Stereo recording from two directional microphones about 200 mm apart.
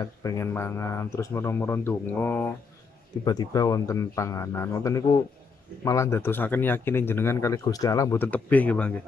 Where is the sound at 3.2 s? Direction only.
20° left (ahead or behind).